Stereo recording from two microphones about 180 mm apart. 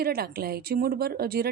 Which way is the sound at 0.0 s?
55° right (ahead or behind).